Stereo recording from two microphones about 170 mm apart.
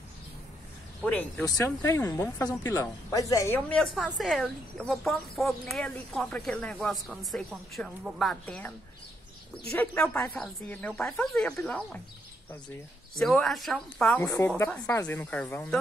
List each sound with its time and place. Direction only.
1.0 s speech: 10° left (ahead or behind)
13.2 s speech: centre (ahead or behind)
14.2 s speech: 20° left (ahead or behind)